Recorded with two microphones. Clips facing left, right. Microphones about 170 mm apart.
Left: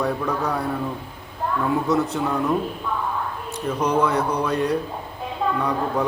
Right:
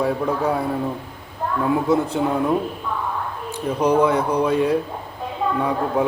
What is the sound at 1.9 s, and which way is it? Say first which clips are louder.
Speech: right 2 dB; 30° right (ahead or behind).